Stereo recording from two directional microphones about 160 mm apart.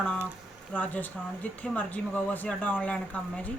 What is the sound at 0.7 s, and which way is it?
Speech, 10° left (ahead or behind).